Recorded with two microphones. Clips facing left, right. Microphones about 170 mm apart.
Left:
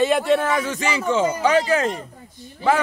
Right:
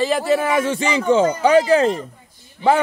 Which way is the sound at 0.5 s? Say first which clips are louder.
Right 4 dB; 30° right (ahead or behind).